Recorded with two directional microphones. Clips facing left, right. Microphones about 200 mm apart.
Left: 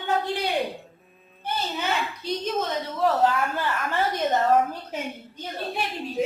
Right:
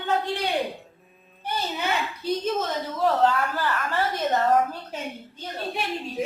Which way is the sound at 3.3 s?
20° left (ahead or behind).